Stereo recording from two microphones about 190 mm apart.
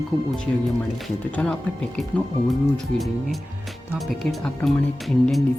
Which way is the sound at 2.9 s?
Centre (ahead or behind).